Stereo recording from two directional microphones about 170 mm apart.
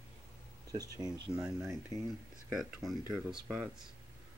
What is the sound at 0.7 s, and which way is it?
Speech, 20° right (ahead or behind).